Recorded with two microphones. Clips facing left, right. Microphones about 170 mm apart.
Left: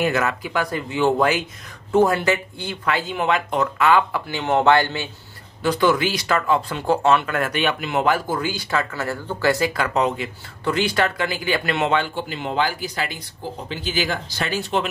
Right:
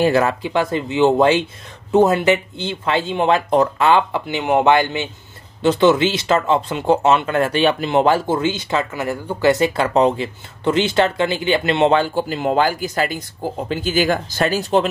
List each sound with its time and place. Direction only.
0.0 s speech: 30° right (ahead or behind)